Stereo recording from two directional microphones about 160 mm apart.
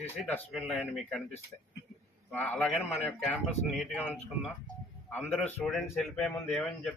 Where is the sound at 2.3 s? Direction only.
10° left (ahead or behind).